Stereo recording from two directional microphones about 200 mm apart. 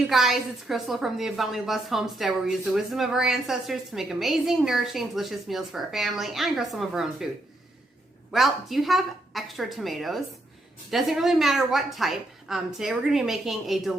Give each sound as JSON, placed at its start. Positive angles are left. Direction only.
{"t": 0.1, "sound": "a woman's voice", "side_deg": 0}
{"t": 8.3, "sound": "a woman's voice", "side_deg": 0}